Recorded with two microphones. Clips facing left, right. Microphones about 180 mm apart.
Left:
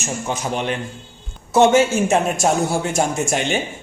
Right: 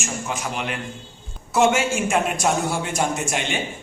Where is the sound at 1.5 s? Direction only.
40° left (ahead or behind).